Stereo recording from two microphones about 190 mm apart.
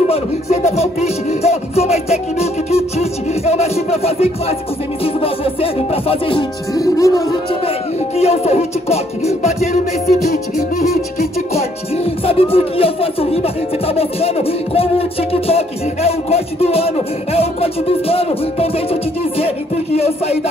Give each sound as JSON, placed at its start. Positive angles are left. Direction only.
{"t": 0.0, "sound": "music", "side_deg": 35}
{"t": 8.2, "sound": "music", "side_deg": 35}
{"t": 11.5, "sound": "speech", "side_deg": 30}